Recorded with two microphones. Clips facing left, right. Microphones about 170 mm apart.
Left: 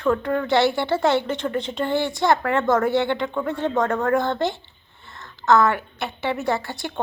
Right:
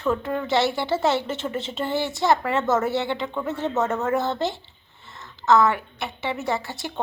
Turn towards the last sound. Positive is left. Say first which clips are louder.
# left 3 dB
turn(degrees=0)  # may be behind; listen again after turning